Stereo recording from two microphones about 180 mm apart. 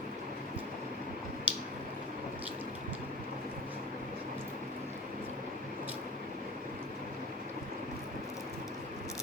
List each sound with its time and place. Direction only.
1.5 s squish: 5° right (ahead or behind)